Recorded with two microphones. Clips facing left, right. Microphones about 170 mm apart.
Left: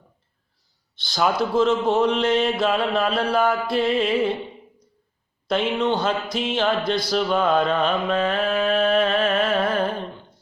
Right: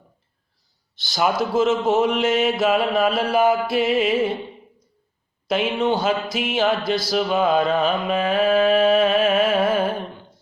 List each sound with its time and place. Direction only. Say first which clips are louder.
0.9 s a man's voice: right 1 dB; centre (ahead or behind)
1.9 s mantra: right 1 dB; 5° right (ahead or behind)
5.5 s speech: right 1 dB; 5° right (ahead or behind)
5.9 s a sound: right 2 dB; 5° right (ahead or behind)